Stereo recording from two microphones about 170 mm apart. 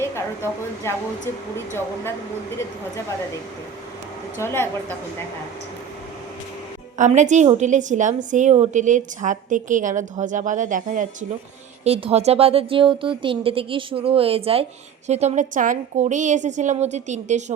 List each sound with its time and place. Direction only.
0.9 s a woman's voice: 15° left (ahead or behind)
4.4 s a woman's voice: 15° left (ahead or behind)
7.0 s a woman's voice: 45° right (ahead or behind)
11.9 s speech: 35° right (ahead or behind)